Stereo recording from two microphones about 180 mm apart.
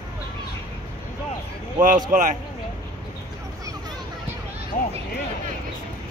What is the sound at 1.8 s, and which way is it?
Speech, 50° right (ahead or behind).